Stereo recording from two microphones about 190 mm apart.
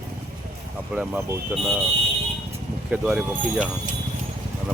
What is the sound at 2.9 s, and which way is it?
Speech, 5° right (ahead or behind).